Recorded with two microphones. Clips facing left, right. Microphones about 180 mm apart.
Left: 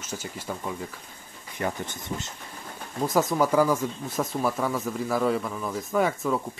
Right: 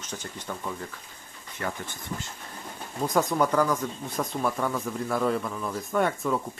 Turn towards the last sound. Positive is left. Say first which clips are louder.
# left 1 dB
turn(degrees=0)  # may be behind; listen again after turning